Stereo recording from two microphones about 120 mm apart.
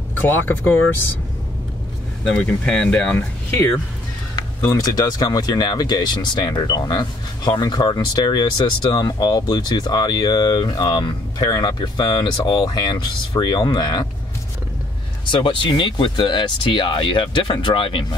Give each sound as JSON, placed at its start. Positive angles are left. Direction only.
{"t": 0.3, "sound": "speech", "side_deg": 15}
{"t": 2.2, "sound": "speech", "side_deg": 5}
{"t": 4.6, "sound": "speech", "side_deg": 30}
{"t": 15.3, "sound": "speech", "side_deg": 45}